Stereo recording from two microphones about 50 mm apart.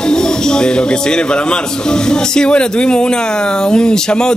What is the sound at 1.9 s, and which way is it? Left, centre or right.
A man's voice, centre.